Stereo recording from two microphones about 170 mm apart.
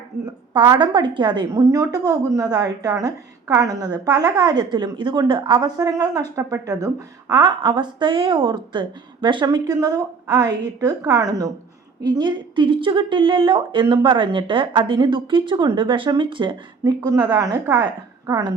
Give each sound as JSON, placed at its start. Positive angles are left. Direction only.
{"t": 0.5, "sound": "a woman's voice", "side_deg": -25}